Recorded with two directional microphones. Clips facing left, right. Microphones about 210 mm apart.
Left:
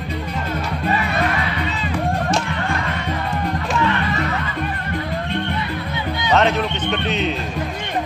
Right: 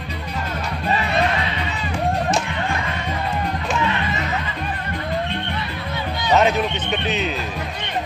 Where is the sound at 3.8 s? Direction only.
20° right (ahead or behind).